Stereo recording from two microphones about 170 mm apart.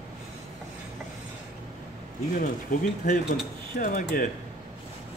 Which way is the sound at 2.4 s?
50° left (ahead or behind).